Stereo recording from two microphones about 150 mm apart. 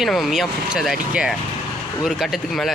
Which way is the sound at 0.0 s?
Centre (ahead or behind).